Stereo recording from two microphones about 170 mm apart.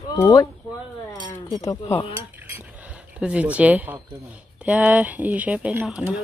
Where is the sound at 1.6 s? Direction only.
20° left (ahead or behind).